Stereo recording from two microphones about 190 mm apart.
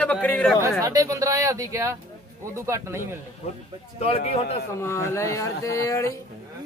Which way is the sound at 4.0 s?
30° left (ahead or behind).